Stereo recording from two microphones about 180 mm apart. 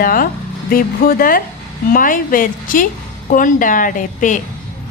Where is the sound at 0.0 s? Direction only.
50° left (ahead or behind).